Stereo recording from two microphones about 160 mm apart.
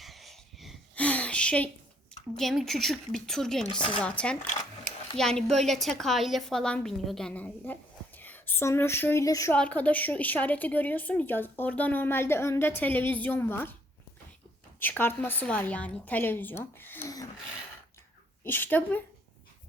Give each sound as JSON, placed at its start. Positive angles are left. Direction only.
{"t": 0.0, "sound": "wheeze", "side_deg": 0}
{"t": 0.9, "sound": "a sound", "side_deg": 10}
{"t": 2.3, "sound": "a woman's voice", "side_deg": 0}
{"t": 9.5, "sound": "a woman's voice", "side_deg": 10}
{"t": 14.8, "sound": "a woman's voice", "side_deg": 10}
{"t": 18.4, "sound": "a woman's voice", "side_deg": 10}